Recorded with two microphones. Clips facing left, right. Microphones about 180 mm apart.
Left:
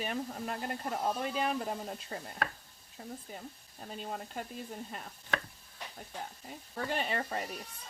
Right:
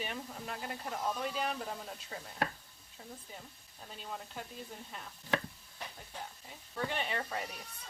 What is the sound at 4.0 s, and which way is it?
Speech, 50° left (ahead or behind).